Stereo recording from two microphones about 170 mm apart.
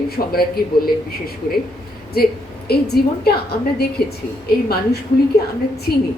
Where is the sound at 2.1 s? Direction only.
65° left (ahead or behind).